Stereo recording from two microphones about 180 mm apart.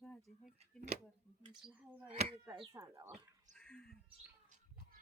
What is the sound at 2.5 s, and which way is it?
Speech, 20° right (ahead or behind).